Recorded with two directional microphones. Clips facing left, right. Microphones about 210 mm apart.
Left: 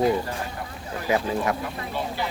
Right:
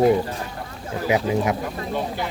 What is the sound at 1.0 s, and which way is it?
Speech, 15° right (ahead or behind).